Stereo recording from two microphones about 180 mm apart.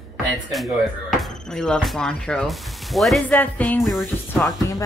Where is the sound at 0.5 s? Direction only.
Centre (ahead or behind).